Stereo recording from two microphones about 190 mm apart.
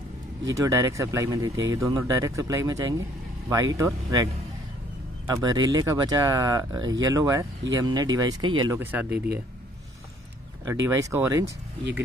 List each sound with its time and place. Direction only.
0.5 s speech: 15° right (ahead or behind)
8.7 s speech: 10° right (ahead or behind)
10.6 s speech: 15° right (ahead or behind)